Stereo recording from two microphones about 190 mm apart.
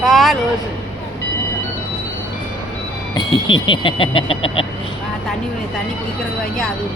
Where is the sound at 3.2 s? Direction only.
25° left (ahead or behind).